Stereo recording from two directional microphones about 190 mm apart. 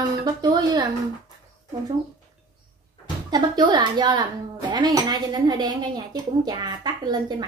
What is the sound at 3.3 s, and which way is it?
A woman's voice, 25° right (ahead or behind).